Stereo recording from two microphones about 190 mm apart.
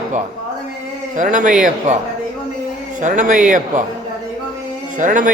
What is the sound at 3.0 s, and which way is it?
Speech, 40° right (ahead or behind).